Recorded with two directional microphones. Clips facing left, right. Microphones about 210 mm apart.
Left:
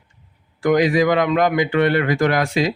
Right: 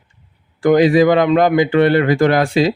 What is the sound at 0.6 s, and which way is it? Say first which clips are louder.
Speech: right 5 dB; 30° right (ahead or behind).